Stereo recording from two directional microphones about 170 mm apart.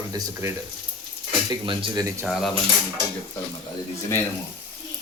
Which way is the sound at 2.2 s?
Centre (ahead or behind).